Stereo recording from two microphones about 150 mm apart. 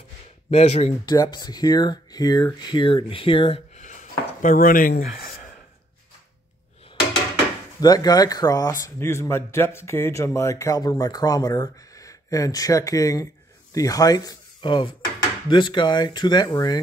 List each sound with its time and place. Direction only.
0.5 s speech: 45° left (ahead or behind)
1.0 s a man's voice: 25° left (ahead or behind)
3.8 s a sound: 55° left (ahead or behind); by 5.3 s 80° left
7.8 s a man's voice: 25° left (ahead or behind)